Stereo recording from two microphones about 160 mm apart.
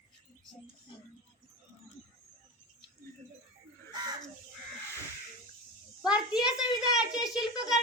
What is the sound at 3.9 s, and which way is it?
Bird, 25° right (ahead or behind).